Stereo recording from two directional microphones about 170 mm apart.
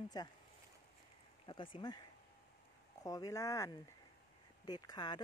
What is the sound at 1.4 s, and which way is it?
Speech, 30° left (ahead or behind).